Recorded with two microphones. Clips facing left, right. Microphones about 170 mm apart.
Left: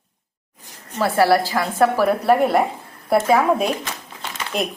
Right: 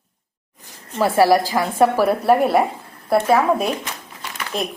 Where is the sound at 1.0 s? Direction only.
15° right (ahead or behind).